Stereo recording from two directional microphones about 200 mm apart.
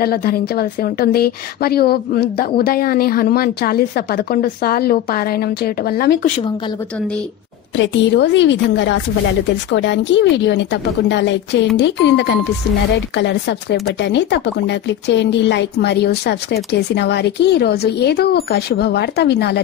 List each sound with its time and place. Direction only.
0.0 s a woman's voice: 50° left (ahead or behind)
7.7 s speech: 65° left (ahead or behind)